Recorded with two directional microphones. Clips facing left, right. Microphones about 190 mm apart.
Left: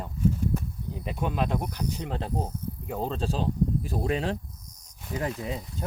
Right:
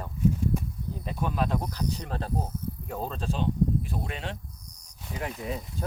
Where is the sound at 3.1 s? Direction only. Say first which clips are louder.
Right 1 dB; 30° left (ahead or behind).